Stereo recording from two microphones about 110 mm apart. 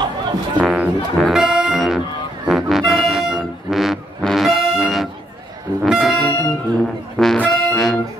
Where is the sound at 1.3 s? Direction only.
5° right (ahead or behind).